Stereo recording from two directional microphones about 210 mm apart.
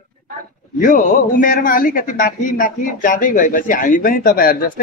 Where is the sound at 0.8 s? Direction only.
40° left (ahead or behind).